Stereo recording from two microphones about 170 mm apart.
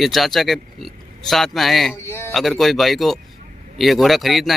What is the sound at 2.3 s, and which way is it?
A man's voice, centre (ahead or behind).